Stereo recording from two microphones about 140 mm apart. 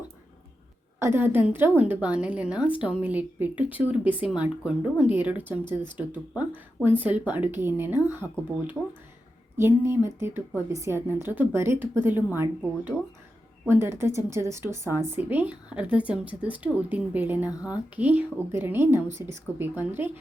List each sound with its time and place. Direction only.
0.9 s a woman's voice: 20° right (ahead or behind)